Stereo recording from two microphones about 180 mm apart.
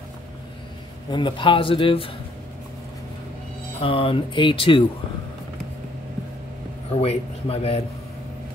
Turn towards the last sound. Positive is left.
turn(degrees=35)  # may be behind; listen again after turning